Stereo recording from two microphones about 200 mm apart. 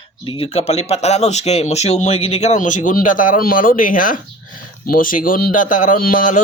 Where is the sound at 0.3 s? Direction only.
30° left (ahead or behind).